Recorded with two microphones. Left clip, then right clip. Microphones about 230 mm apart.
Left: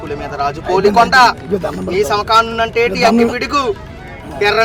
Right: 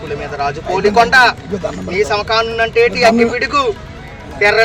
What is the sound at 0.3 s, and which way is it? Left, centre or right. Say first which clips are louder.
Speech: left 2 dB; left.